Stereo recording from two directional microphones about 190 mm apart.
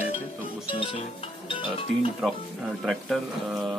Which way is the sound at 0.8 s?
25° left (ahead or behind).